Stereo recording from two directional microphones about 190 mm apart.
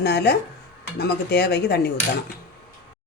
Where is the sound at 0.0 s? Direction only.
60° left (ahead or behind).